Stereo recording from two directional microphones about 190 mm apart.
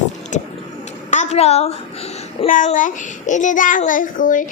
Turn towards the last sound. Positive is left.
turn(degrees=45)  # may be behind; listen again after turning